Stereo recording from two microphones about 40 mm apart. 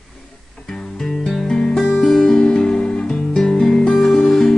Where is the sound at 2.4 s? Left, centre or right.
Left.